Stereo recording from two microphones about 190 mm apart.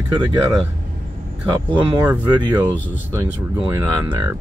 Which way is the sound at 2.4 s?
25° right (ahead or behind).